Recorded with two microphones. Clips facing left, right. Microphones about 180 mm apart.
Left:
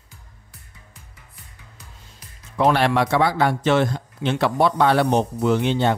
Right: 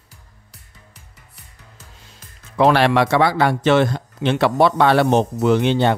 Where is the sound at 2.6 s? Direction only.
85° right.